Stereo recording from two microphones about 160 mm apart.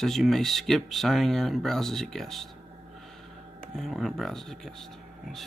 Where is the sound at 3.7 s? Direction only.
Centre (ahead or behind).